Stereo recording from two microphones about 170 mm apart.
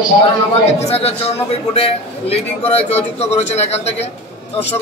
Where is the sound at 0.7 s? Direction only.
35° left (ahead or behind).